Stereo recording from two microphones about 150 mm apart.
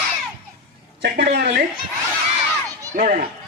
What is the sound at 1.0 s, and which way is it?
Speech, 90° right.